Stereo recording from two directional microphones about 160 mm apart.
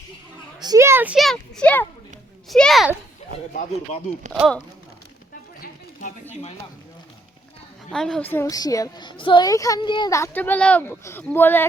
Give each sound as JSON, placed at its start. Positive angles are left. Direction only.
{"t": 0.6, "sound": "a sound", "side_deg": -20}
{"t": 1.1, "sound": "speech", "side_deg": 0}
{"t": 7.9, "sound": "a woman's voice", "side_deg": 5}